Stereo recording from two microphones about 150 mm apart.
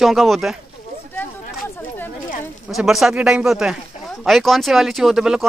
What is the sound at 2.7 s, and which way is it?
Speech, centre (ahead or behind).